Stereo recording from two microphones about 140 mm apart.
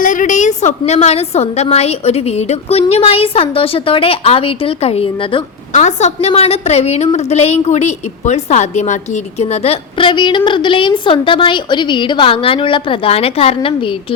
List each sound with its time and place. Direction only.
0.0 s a woman's voice: 65° left (ahead or behind); by 5.4 s 40° left (ahead or behind)
5.7 s a woman's voice: 55° left (ahead or behind); by 13.9 s 40° left (ahead or behind)